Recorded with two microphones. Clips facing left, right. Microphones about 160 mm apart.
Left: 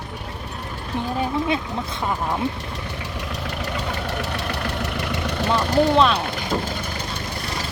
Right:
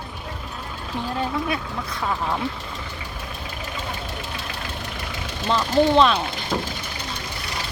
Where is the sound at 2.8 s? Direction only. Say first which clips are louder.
Left 4 dB; 70° left (ahead or behind).